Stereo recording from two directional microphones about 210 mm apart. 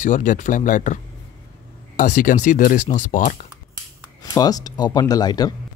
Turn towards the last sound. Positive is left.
turn(degrees=20)  # may be behind; listen again after turning